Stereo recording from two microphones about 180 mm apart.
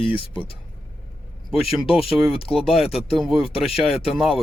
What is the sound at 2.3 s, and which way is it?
Speech, 30° left (ahead or behind).